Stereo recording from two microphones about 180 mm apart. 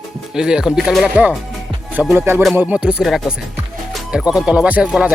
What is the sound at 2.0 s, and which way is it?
Music, 10° right (ahead or behind).